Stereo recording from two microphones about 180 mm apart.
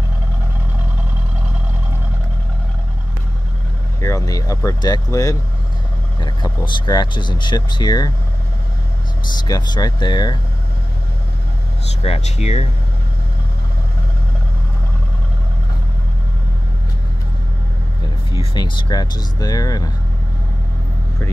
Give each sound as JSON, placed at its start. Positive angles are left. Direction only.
{"t": 4.0, "sound": "speech", "side_deg": 20}
{"t": 9.4, "sound": "speech", "side_deg": 20}
{"t": 12.0, "sound": "speech", "side_deg": 35}
{"t": 18.4, "sound": "speech", "side_deg": 25}